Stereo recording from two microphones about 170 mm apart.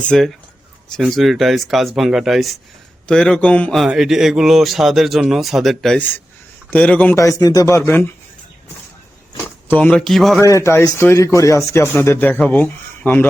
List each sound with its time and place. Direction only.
0.1 s a man's voice: centre (ahead or behind)
7.2 s speech: 20° left (ahead or behind)
9.4 s speech: 10° left (ahead or behind)
10.5 s speech: 15° left (ahead or behind)